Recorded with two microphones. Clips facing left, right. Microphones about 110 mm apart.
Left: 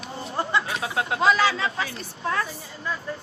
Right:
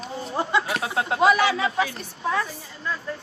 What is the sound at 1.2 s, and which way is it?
Speech, 20° right (ahead or behind).